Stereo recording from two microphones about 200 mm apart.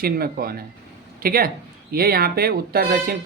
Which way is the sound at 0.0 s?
50° right (ahead or behind).